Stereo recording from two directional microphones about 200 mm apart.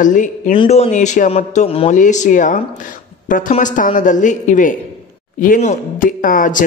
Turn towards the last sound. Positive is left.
turn(degrees=40)  # may be behind; listen again after turning